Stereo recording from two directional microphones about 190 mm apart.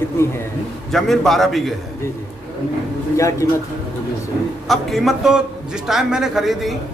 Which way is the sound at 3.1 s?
15° left (ahead or behind).